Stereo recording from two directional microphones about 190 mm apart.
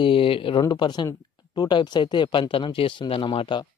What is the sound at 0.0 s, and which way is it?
Speech, 25° left (ahead or behind).